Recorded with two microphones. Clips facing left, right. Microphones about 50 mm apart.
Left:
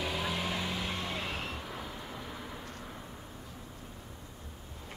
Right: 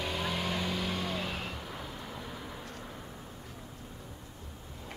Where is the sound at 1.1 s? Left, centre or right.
Left.